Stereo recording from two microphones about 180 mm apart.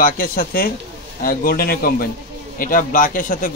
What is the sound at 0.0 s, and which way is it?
A man's voice, 50° left (ahead or behind).